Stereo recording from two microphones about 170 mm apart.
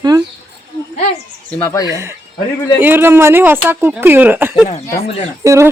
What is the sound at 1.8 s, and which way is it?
Speech, 20° right (ahead or behind).